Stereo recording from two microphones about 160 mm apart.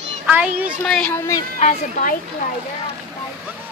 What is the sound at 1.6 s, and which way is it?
Speech, 50° left (ahead or behind).